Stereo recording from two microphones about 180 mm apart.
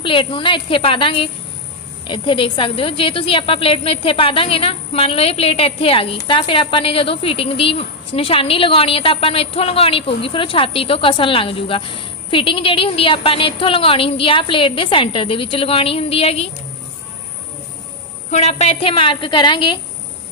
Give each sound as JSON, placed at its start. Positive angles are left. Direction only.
{"t": 0.0, "sound": "a woman's voice", "side_deg": 30}
{"t": 18.3, "sound": "a woman's voice", "side_deg": 40}